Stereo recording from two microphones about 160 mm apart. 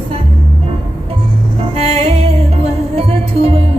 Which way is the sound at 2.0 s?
40° right (ahead or behind).